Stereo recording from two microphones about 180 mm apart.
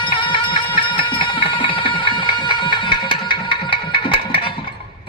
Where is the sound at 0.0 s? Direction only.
25° left (ahead or behind).